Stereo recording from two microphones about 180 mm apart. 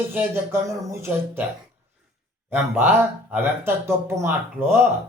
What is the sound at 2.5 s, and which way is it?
Speech, 10° right (ahead or behind).